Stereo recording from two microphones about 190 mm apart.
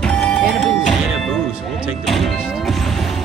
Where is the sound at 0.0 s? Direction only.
5° left (ahead or behind).